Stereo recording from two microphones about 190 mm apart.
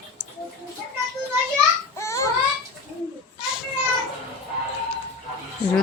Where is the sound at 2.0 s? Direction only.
15° left (ahead or behind).